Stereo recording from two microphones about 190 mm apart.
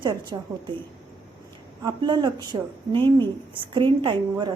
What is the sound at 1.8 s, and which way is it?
Speech, 20° right (ahead or behind).